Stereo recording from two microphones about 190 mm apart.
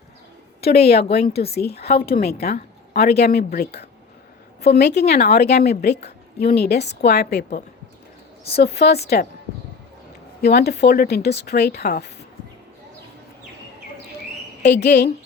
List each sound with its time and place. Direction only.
0.6 s a woman's voice: 30° left (ahead or behind)
1.5 s a woman's voice: 60° left (ahead or behind)
2.0 s a woman's voice: 30° left (ahead or behind)
2.2 s a woman's voice: 60° left (ahead or behind)
10.4 s a woman's voice: 60° left (ahead or behind)
14.6 s a woman's voice: 60° left (ahead or behind)